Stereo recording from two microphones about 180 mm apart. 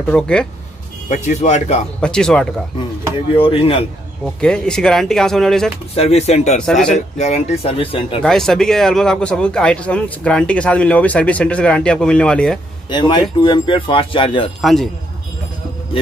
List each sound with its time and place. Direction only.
0.0 s speech: 5° left (ahead or behind)
1.0 s speech: 40° left (ahead or behind)
2.0 s speech: 5° left (ahead or behind)
3.3 s speech: 30° left (ahead or behind)
4.4 s speech: 5° left (ahead or behind)
5.9 s speech: 35° left (ahead or behind)
6.6 s speech: 5° left (ahead or behind)
7.2 s speech: 40° left (ahead or behind)
8.2 s speech: 5° left (ahead or behind)
12.9 s speech: 25° left (ahead or behind)
14.6 s speech: centre (ahead or behind)